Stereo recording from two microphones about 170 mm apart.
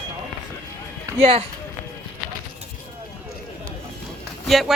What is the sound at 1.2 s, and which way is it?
Speech, 35° right (ahead or behind).